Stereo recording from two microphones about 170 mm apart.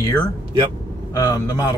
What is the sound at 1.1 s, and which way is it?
Speech, 20° left (ahead or behind).